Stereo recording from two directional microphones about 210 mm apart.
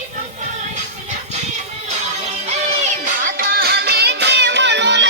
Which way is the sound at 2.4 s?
35° right (ahead or behind).